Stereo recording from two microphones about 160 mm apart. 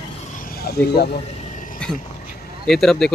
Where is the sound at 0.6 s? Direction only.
90° left.